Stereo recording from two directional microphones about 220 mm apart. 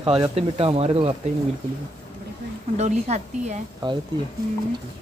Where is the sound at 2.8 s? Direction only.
30° right (ahead or behind).